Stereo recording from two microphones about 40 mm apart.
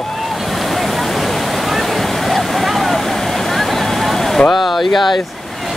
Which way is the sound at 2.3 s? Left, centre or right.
Centre.